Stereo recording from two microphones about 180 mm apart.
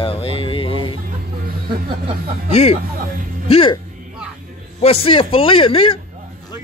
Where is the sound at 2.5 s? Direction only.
35° left (ahead or behind).